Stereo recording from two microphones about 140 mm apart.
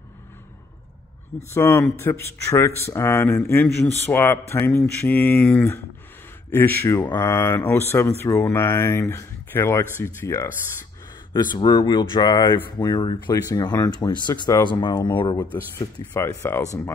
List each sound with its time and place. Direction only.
1.5 s speech: 20° left (ahead or behind)
16.1 s speech: 15° left (ahead or behind)